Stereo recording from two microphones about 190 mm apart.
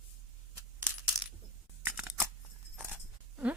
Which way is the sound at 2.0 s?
10° right (ahead or behind).